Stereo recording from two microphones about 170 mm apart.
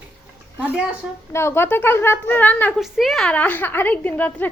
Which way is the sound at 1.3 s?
15° left (ahead or behind).